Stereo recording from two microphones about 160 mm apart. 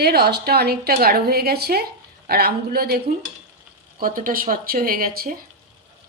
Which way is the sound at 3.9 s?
60° right (ahead or behind).